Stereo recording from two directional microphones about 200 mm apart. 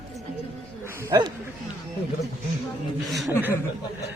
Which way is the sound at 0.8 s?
15° right (ahead or behind).